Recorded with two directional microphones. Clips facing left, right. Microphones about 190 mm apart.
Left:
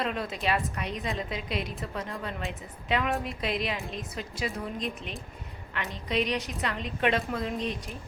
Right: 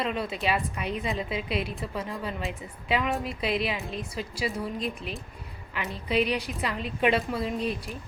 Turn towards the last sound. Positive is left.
turn(degrees=-5)  # may be behind; listen again after turning